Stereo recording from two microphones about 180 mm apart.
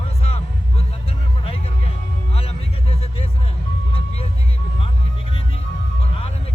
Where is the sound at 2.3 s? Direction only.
35° left (ahead or behind).